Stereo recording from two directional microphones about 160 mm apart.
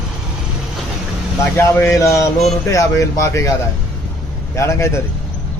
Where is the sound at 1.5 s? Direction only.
15° left (ahead or behind).